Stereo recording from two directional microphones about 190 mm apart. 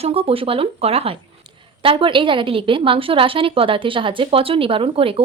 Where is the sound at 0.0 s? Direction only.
30° right (ahead or behind).